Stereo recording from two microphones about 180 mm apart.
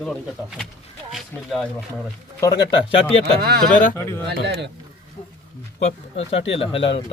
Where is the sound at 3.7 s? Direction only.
45° left (ahead or behind).